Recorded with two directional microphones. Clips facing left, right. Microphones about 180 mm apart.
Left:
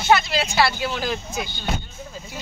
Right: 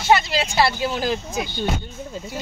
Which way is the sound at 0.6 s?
30° right (ahead or behind).